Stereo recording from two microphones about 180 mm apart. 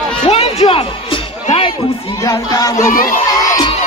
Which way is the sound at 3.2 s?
20° left (ahead or behind).